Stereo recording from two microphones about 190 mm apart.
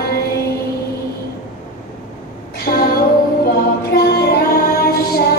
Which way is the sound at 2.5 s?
50° left (ahead or behind).